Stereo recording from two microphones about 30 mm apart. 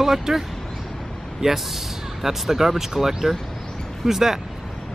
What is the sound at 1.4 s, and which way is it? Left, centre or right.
Speech, centre.